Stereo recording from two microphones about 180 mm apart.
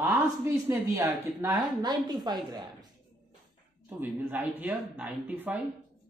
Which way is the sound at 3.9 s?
10° right (ahead or behind).